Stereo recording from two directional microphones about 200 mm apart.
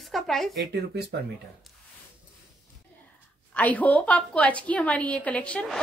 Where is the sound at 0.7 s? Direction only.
50° right (ahead or behind).